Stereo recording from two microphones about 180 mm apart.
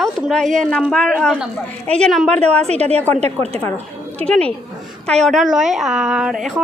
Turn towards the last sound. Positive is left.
turn(degrees=0)  # may be behind; listen again after turning